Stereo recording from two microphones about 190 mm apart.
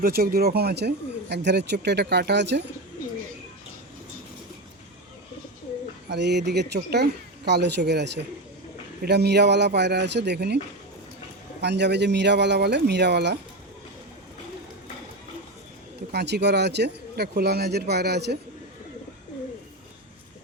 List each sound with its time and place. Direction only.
0.0 s speech: 55° right (ahead or behind)
6.1 s speech: 60° right (ahead or behind)
11.6 s speech: 65° right (ahead or behind)
16.1 s speech: 60° right (ahead or behind)